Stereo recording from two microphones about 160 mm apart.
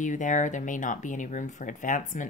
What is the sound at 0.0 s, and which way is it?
Speech, 50° left (ahead or behind).